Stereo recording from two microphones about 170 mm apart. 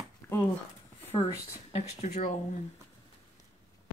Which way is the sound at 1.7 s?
40° left (ahead or behind).